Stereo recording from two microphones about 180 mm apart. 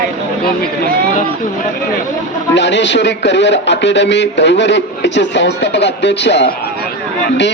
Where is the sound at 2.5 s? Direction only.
75° left (ahead or behind).